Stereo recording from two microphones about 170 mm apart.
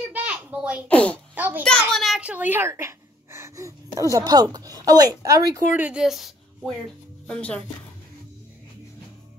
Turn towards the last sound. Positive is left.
turn(degrees=5)  # may be behind; listen again after turning